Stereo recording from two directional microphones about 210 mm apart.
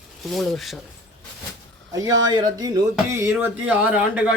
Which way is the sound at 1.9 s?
15° right (ahead or behind).